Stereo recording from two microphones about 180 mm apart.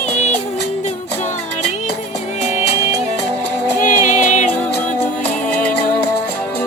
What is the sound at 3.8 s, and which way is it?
Music, 45° left (ahead or behind).